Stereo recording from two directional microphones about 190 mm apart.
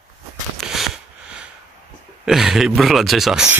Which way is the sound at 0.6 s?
Centre (ahead or behind).